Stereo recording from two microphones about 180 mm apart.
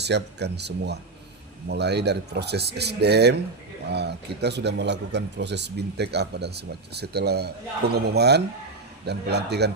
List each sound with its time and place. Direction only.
0.0 s speech: 70° right (ahead or behind)